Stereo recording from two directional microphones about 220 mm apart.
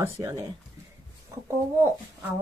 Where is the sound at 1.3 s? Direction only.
15° right (ahead or behind).